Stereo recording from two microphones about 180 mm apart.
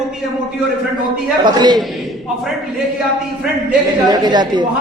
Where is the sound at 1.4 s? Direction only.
25° right (ahead or behind).